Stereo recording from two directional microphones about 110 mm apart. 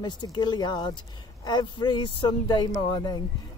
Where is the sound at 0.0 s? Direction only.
40° left (ahead or behind).